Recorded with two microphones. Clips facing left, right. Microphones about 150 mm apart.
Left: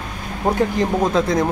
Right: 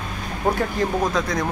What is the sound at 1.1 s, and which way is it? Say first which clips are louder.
Speech: left 6 dB; 25° left (ahead or behind).